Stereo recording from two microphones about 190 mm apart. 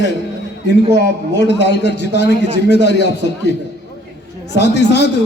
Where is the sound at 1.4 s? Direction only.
65° left (ahead or behind).